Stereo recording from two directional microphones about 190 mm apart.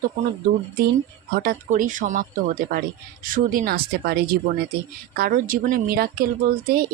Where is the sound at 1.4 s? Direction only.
50° right (ahead or behind).